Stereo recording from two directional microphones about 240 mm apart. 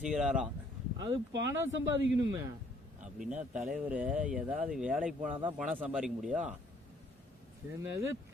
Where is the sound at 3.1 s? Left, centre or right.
Centre.